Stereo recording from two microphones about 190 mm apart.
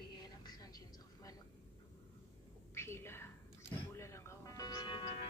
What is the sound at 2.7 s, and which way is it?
Whispering, 15° left (ahead or behind).